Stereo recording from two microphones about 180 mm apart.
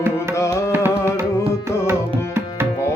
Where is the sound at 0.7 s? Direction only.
10° right (ahead or behind).